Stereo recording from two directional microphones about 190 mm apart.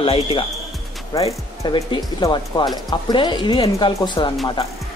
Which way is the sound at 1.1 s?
20° left (ahead or behind).